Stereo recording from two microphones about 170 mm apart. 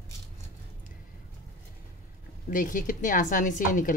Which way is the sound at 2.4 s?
50° left (ahead or behind).